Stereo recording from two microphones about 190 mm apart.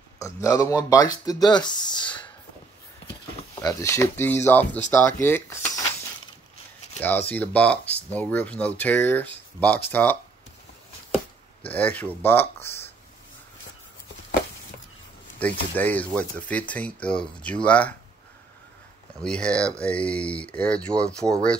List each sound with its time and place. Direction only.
0.2 s speech: 15° left (ahead or behind)
3.6 s speech: 15° left (ahead or behind)
7.0 s speech: 10° left (ahead or behind)
11.6 s speech: 10° left (ahead or behind)
12.7 s a sound: 15° left (ahead or behind)
15.3 s speech: 10° left (ahead or behind)
19.2 s speech: 5° left (ahead or behind)